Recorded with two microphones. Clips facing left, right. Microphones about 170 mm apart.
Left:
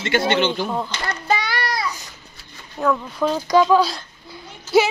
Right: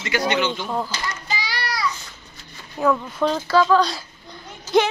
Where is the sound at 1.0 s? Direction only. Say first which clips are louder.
Left 6 dB; 60° left (ahead or behind).